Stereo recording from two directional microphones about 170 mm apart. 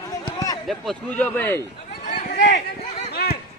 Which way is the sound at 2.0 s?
45° left (ahead or behind).